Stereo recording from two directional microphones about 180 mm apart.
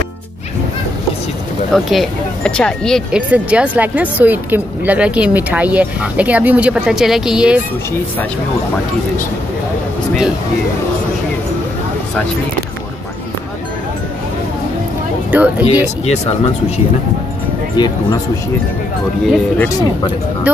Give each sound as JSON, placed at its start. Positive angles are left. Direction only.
{"t": 1.7, "sound": "speech", "side_deg": 0}
{"t": 3.2, "sound": "speech", "side_deg": -5}
{"t": 15.3, "sound": "speech", "side_deg": -10}
{"t": 16.1, "sound": "speech", "side_deg": 35}
{"t": 17.7, "sound": "speech", "side_deg": 25}
{"t": 19.2, "sound": "speech", "side_deg": 5}
{"t": 20.5, "sound": "speech", "side_deg": -10}